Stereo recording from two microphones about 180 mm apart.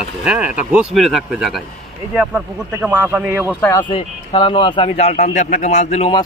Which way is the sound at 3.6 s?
20° left (ahead or behind).